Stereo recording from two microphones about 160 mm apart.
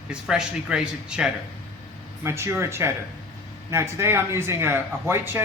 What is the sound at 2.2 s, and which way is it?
Speech, 15° right (ahead or behind).